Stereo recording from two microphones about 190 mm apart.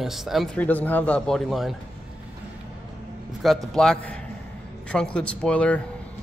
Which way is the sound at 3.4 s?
5° left (ahead or behind).